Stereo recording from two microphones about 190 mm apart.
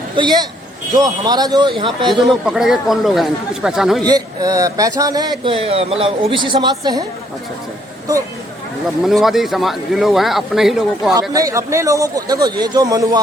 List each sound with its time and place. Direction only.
0.2 s speech: 20° right (ahead or behind)
2.2 s a man's voice: centre (ahead or behind)
4.0 s speech: 20° right (ahead or behind)
9.0 s a man's voice: centre (ahead or behind)
11.1 s speech: 15° right (ahead or behind)